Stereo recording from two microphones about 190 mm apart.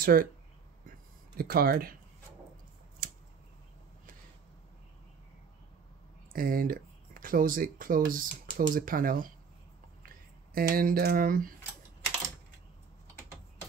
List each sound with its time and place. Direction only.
0.0 s speech: 50° right (ahead or behind)
1.4 s speech: 55° right (ahead or behind)
6.3 s speech: 50° right (ahead or behind)